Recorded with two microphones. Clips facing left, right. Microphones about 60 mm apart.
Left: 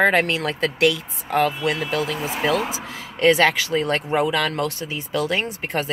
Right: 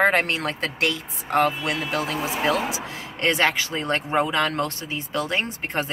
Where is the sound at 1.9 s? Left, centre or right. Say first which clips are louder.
Left 2 dB; right.